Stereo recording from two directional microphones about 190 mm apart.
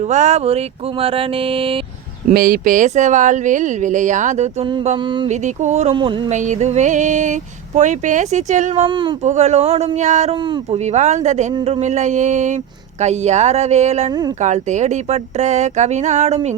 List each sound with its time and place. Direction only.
0.0 s mantra: 35° right (ahead or behind)
2.2 s speech: 50° right (ahead or behind)
4.6 s mantra: 30° right (ahead or behind)
5.3 s speech: 40° right (ahead or behind)
5.9 s mantra: 25° right (ahead or behind)
6.3 s speech: 40° right (ahead or behind)
8.9 s mantra: 25° right (ahead or behind)
9.2 s speech: 35° right (ahead or behind)
10.4 s mantra: 25° right (ahead or behind)
10.8 s speech: 35° right (ahead or behind)
14.1 s mantra: 20° right (ahead or behind)
14.4 s speech: 40° right (ahead or behind)